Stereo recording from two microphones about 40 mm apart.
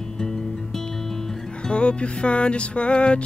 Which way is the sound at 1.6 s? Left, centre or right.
Left.